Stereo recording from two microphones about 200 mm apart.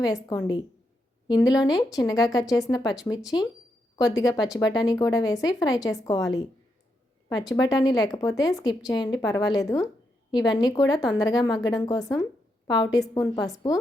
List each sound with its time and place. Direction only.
0.0 s speech: 20° left (ahead or behind)